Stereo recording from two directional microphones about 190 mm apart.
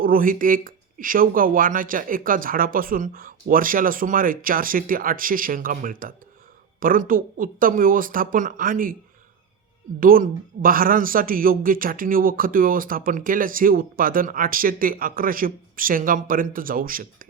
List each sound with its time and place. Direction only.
0.0 s speech: 50° right (ahead or behind)
10.0 s speech: 50° right (ahead or behind)